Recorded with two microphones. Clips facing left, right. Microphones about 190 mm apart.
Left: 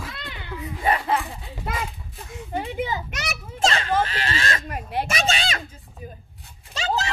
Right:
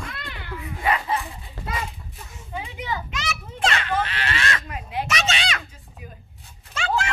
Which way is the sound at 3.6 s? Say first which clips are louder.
Left 2 dB; 40° left (ahead or behind).